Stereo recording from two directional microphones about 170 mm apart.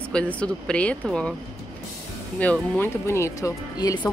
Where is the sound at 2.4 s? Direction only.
10° left (ahead or behind).